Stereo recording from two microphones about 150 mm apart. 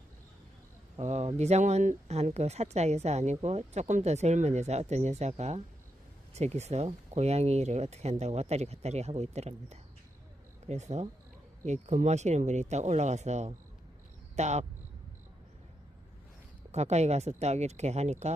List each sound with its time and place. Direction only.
0.9 s speech: 45° right (ahead or behind)
16.7 s speech: 45° right (ahead or behind)